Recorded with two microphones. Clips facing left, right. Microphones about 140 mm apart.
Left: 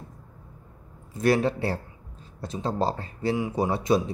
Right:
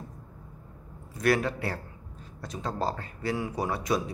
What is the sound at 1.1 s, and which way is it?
A man's voice, 30° left (ahead or behind).